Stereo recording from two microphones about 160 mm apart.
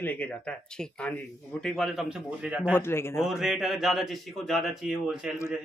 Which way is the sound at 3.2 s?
Centre (ahead or behind).